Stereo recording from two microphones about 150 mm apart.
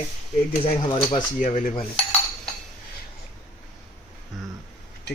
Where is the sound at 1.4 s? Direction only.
55° left (ahead or behind).